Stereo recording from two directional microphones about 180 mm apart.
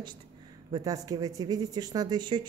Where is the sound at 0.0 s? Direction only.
25° right (ahead or behind).